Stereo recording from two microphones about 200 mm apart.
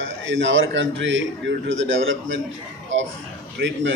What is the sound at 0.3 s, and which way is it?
A man's voice, 70° right (ahead or behind).